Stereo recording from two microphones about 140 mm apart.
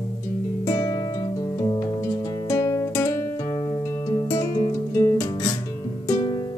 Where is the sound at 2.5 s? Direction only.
25° left (ahead or behind).